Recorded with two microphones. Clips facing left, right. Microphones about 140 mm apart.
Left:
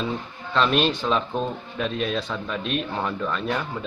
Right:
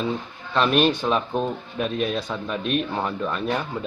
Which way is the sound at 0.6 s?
10° right (ahead or behind).